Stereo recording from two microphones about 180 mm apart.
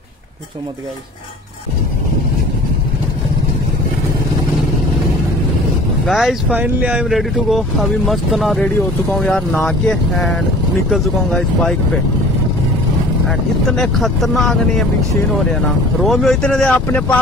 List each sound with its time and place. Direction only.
6.0 s speech: centre (ahead or behind)
13.3 s speech: centre (ahead or behind)